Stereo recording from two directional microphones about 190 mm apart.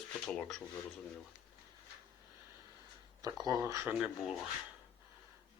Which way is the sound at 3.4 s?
20° right (ahead or behind).